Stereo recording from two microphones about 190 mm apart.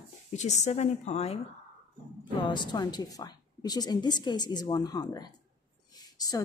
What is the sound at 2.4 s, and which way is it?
A woman's voice, 25° left (ahead or behind).